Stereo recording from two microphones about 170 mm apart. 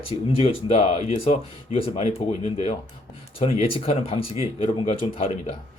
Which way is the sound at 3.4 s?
35° left (ahead or behind).